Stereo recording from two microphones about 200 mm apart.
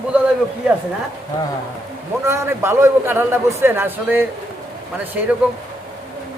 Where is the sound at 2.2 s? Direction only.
15° right (ahead or behind).